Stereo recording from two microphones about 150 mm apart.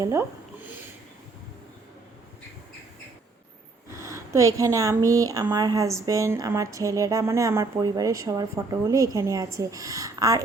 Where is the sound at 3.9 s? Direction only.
20° right (ahead or behind).